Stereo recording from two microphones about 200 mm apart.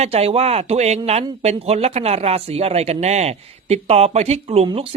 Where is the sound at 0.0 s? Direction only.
30° right (ahead or behind).